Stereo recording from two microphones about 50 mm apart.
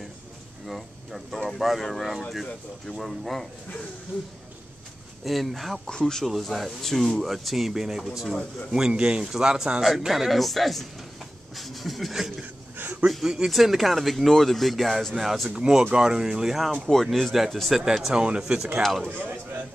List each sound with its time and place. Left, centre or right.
0.7 s a sound: centre
1.6 s speech: centre
5.2 s speech: centre
5.9 s speech: centre
6.2 s speech: centre
12.7 s a sound: right
13.2 s speech: centre
15.5 s speech: centre
18.1 s speech: centre
18.8 s speech: centre
19.2 s a sound: right